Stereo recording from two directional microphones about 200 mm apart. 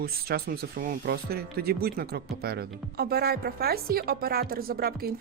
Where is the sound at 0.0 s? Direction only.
50° right (ahead or behind).